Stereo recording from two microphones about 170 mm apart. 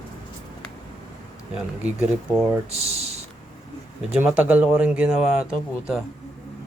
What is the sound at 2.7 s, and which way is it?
Speech, 35° right (ahead or behind).